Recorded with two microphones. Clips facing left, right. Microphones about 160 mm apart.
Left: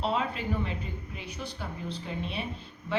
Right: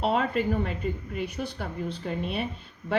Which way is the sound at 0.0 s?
50° right (ahead or behind).